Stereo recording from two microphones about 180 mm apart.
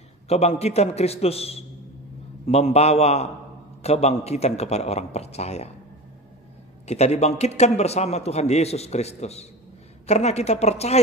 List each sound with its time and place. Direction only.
0.3 s a man's voice: 35° left (ahead or behind)
6.9 s a man's voice: 35° left (ahead or behind)